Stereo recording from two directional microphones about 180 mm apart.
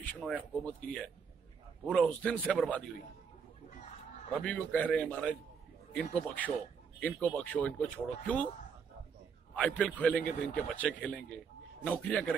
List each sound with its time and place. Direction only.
0.0 s a man's voice: 5° left (ahead or behind)
4.3 s a man's voice: 5° left (ahead or behind)
9.6 s a man's voice: 5° left (ahead or behind)